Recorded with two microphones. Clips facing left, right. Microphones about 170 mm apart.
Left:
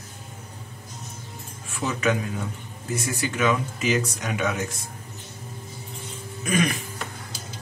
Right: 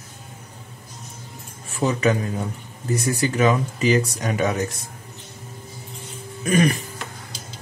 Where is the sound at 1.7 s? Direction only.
35° right (ahead or behind).